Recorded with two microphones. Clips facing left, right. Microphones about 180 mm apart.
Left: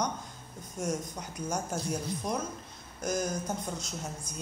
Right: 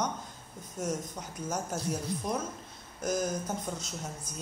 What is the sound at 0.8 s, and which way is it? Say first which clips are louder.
Speech: left 1 dB; 5° right (ahead or behind).